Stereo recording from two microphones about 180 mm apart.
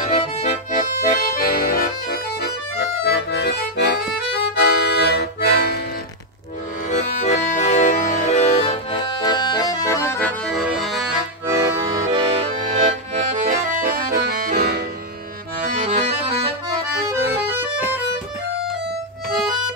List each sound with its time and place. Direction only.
0.0 s accordion: 35° left (ahead or behind)
1.0 s accordion: 50° left (ahead or behind)
6.9 s accordion: 40° left (ahead or behind); by 11.1 s centre (ahead or behind)
11.5 s accordion: 20° right (ahead or behind); by 14.8 s 65° right (ahead or behind)
15.6 s accordion: 40° right (ahead or behind)
16.7 s accordion: 15° right (ahead or behind)